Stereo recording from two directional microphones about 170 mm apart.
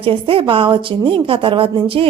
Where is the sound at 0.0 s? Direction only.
30° right (ahead or behind).